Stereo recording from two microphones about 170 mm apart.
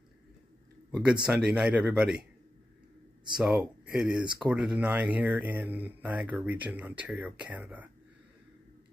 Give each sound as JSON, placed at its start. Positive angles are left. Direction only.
{"t": 1.2, "sound": "speech", "side_deg": -5}
{"t": 3.3, "sound": "speech", "side_deg": 0}